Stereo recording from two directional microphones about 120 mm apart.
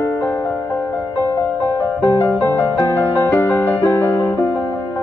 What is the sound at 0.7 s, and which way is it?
Music, 20° left (ahead or behind).